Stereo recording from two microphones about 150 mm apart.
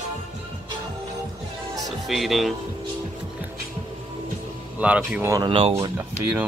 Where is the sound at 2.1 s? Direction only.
Centre (ahead or behind).